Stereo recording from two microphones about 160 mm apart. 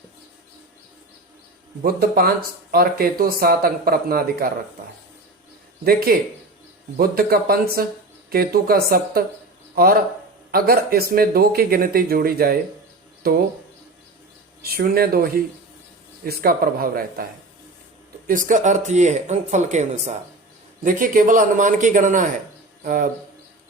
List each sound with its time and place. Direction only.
1.8 s speech: 75° right (ahead or behind)
5.8 s a man's voice: 70° right (ahead or behind)
14.6 s speech: 70° right (ahead or behind)
18.3 s speech: 55° right (ahead or behind)
20.8 s a man's voice: 60° right (ahead or behind)